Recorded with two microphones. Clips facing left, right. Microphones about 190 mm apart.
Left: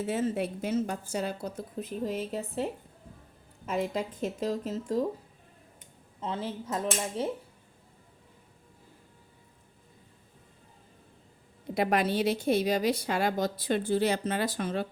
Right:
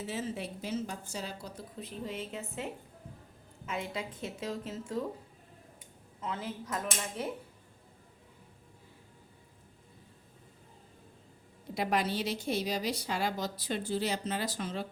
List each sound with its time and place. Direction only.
0.0 s a woman's voice: 55° left (ahead or behind); by 2.6 s 35° left (ahead or behind)
3.7 s speech: 40° left (ahead or behind)
6.1 s speech: 30° left (ahead or behind)
11.7 s a woman's voice: 55° left (ahead or behind)